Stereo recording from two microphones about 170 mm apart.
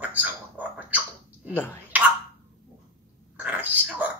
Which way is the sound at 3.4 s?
10° right (ahead or behind).